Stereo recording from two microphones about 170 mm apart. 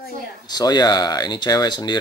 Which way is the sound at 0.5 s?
25° left (ahead or behind).